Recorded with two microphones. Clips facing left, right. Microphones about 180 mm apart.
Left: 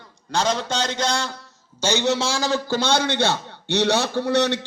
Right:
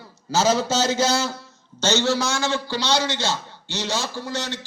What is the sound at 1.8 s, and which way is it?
A man's voice, 15° left (ahead or behind).